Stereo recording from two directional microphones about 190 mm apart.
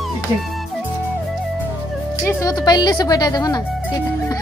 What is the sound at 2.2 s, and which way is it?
Speech, 20° left (ahead or behind).